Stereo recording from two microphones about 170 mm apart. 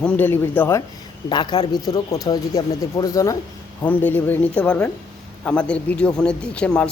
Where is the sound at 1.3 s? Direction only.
25° left (ahead or behind).